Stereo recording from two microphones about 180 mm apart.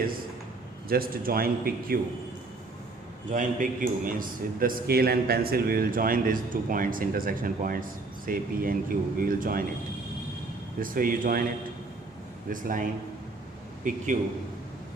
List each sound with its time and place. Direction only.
0.9 s speech: 55° right (ahead or behind)
3.3 s a man's voice: 45° right (ahead or behind)
10.8 s a man's voice: 50° right (ahead or behind)
12.5 s a man's voice: 50° right (ahead or behind)
14.1 s a man's voice: 45° right (ahead or behind)